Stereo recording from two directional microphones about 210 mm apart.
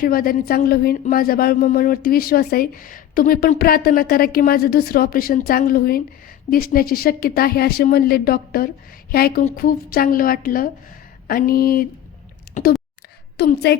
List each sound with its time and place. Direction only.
0.0 s a woman's voice: 45° left (ahead or behind)
13.3 s a woman's voice: 50° left (ahead or behind)